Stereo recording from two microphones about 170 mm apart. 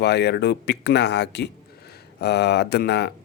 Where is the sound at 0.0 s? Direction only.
75° left (ahead or behind).